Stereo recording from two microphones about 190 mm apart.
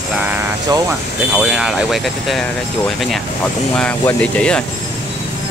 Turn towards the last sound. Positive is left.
turn(degrees=5)  # may be behind; listen again after turning